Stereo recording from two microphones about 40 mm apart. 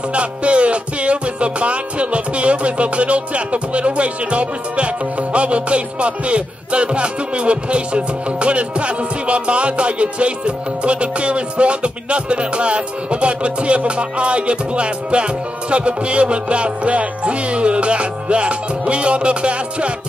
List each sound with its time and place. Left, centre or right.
0.1 s music: right